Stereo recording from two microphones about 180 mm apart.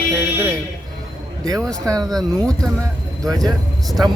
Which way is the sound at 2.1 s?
5° left (ahead or behind).